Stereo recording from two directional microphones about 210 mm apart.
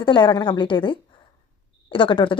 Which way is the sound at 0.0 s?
20° left (ahead or behind).